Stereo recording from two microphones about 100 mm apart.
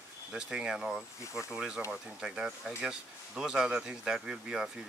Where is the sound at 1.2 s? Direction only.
30° left (ahead or behind).